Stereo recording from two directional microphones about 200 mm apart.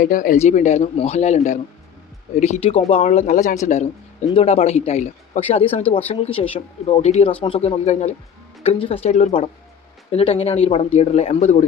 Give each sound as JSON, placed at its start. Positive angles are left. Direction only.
{"t": 0.0, "sound": "speech", "side_deg": 40}